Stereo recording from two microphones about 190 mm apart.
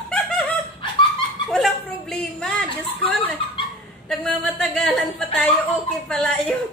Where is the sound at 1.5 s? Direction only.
Centre (ahead or behind).